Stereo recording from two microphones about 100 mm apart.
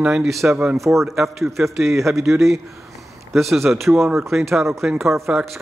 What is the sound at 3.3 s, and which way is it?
Speech, centre (ahead or behind).